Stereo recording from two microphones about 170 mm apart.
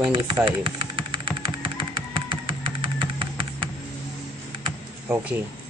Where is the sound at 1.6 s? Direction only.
30° right (ahead or behind).